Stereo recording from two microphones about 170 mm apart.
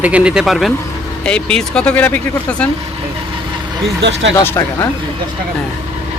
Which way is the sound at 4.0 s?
90° right.